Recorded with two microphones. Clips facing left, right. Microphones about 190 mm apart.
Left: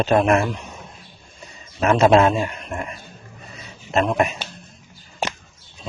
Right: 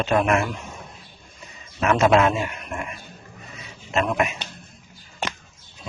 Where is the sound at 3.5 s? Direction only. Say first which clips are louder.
Left 3 dB; 35° left (ahead or behind).